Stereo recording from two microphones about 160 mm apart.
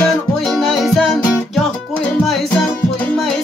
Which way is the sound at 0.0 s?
Centre (ahead or behind).